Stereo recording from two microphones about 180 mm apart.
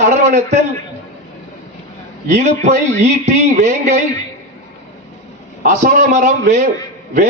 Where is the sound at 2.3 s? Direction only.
40° right (ahead or behind).